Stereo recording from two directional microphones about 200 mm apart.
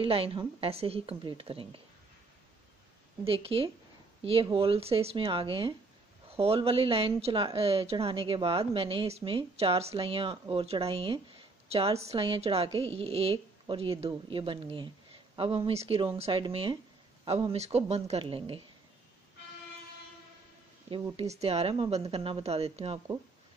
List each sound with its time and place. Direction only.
0.0 s speech: 25° right (ahead or behind)
3.3 s speech: 30° right (ahead or behind)
20.9 s speech: 25° right (ahead or behind)